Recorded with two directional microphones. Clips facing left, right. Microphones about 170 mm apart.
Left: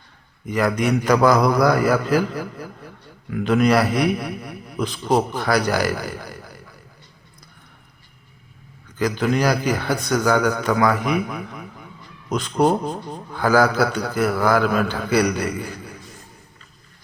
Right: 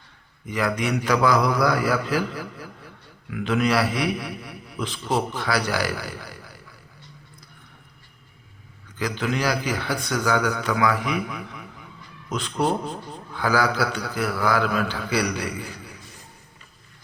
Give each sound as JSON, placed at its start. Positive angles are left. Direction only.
{"t": 0.4, "sound": "a man's voice", "side_deg": 45}
{"t": 9.0, "sound": "a man's voice", "side_deg": 45}